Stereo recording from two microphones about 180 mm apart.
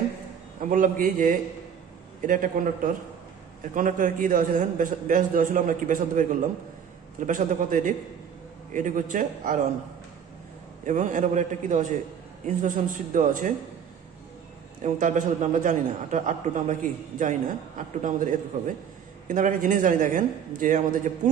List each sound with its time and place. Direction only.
0.7 s a man's voice: 50° right (ahead or behind)
7.2 s a man's voice: 45° right (ahead or behind)
10.9 s a man's voice: 45° right (ahead or behind)
14.8 s a man's voice: 45° right (ahead or behind)